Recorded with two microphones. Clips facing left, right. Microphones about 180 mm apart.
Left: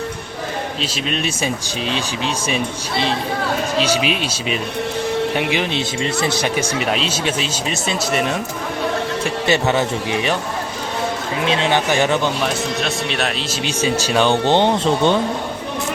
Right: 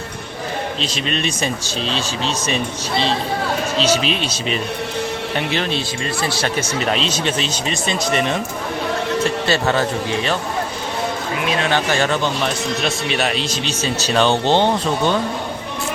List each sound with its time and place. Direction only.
0.8 s speech: 5° left (ahead or behind)
3.8 s speech: 10° left (ahead or behind)
9.2 s speech: 20° left (ahead or behind)
11.4 s speech: 20° left (ahead or behind)
12.8 s speech: centre (ahead or behind)
13.7 s speech: 10° left (ahead or behind)